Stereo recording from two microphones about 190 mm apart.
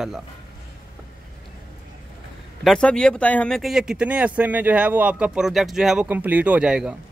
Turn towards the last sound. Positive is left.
turn(degrees=-5)  # may be behind; listen again after turning